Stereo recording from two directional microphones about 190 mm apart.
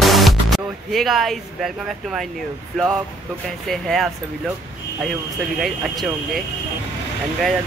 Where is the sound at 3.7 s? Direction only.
Centre (ahead or behind).